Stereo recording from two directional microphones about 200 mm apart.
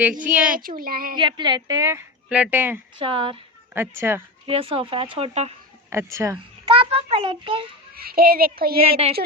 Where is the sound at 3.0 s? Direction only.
25° right (ahead or behind).